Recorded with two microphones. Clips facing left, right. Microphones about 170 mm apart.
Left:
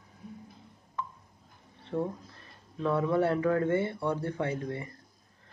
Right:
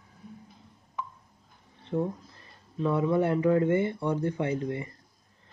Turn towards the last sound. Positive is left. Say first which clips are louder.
# right 3 dB
turn(degrees=-15)  # may be behind; listen again after turning